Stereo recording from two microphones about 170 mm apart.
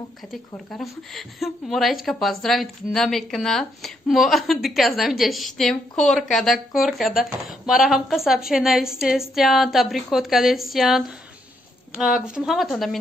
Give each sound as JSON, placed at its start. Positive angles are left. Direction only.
{"t": 0.3, "sound": "a woman's voice", "side_deg": 0}
{"t": 12.3, "sound": "a woman's voice", "side_deg": -5}